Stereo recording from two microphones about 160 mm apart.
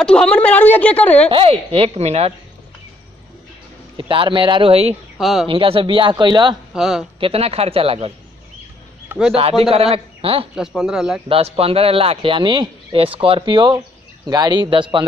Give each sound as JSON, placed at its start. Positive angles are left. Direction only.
{"t": 0.0, "sound": "a woman's voice", "side_deg": 5}
{"t": 1.3, "sound": "speech", "side_deg": -35}
{"t": 3.9, "sound": "speech", "side_deg": -30}
{"t": 5.2, "sound": "speech", "side_deg": 0}
{"t": 5.5, "sound": "speech", "side_deg": -35}
{"t": 6.7, "sound": "speech", "side_deg": -5}
{"t": 7.2, "sound": "speech", "side_deg": -35}
{"t": 9.3, "sound": "speech", "side_deg": -40}
{"t": 10.5, "sound": "speech", "side_deg": -5}
{"t": 11.2, "sound": "speech", "side_deg": -35}